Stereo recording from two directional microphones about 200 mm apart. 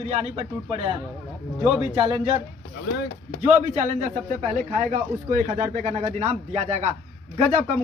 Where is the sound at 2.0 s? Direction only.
30° right (ahead or behind).